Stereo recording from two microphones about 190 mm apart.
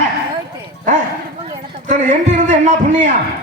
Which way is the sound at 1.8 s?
40° right (ahead or behind).